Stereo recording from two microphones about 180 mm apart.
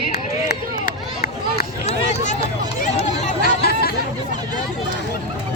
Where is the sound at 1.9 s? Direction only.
40° left (ahead or behind).